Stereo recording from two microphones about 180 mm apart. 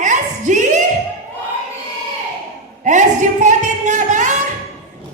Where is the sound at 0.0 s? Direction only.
45° right (ahead or behind).